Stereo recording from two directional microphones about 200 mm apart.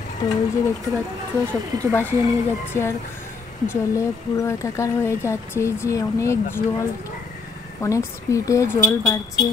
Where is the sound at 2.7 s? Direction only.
15° left (ahead or behind).